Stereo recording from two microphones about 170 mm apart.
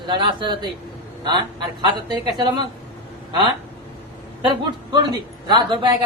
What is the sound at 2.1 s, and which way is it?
Speech, 25° right (ahead or behind).